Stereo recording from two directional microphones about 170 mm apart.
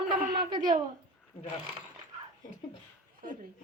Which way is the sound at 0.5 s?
25° right (ahead or behind).